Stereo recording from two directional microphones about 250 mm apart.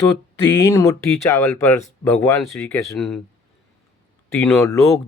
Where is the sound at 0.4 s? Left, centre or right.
Centre.